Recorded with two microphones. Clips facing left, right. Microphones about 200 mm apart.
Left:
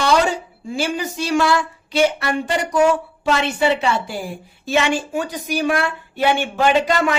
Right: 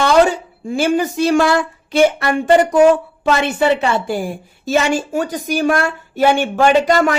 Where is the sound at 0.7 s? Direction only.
50° right (ahead or behind).